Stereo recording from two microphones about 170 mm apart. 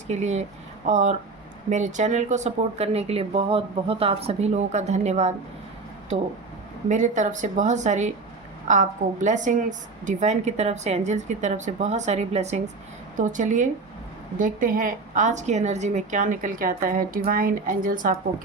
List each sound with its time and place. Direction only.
0.1 s a woman's voice: 40° right (ahead or behind)
6.8 s a woman's voice: 45° right (ahead or behind)